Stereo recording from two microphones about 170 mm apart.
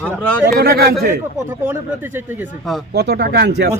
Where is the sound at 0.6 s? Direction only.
70° right (ahead or behind).